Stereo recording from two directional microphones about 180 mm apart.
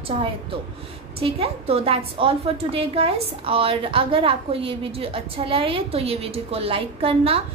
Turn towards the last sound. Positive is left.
turn(degrees=-30)  # may be behind; listen again after turning